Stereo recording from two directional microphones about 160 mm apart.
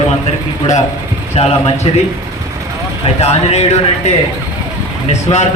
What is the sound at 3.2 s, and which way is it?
Speech, 40° left (ahead or behind).